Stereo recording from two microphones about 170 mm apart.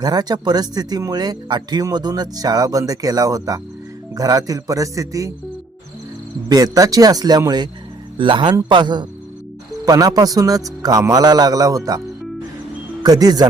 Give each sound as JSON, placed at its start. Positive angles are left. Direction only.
{"t": 0.0, "sound": "speech", "side_deg": -25}
{"t": 6.5, "sound": "speech", "side_deg": -20}
{"t": 13.0, "sound": "speech", "side_deg": -20}